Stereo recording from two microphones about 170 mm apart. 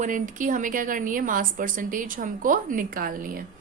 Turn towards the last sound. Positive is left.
turn(degrees=-55)  # may be behind; listen again after turning